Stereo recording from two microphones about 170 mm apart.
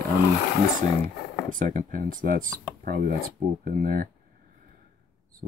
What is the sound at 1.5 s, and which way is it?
Speech, 50° right (ahead or behind).